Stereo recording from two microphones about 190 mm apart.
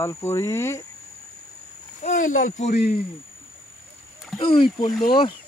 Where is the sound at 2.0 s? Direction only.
45° left (ahead or behind).